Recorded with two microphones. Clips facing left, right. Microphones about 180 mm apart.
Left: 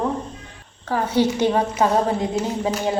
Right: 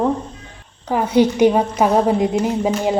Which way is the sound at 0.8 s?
15° right (ahead or behind).